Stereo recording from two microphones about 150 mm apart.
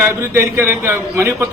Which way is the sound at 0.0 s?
15° right (ahead or behind).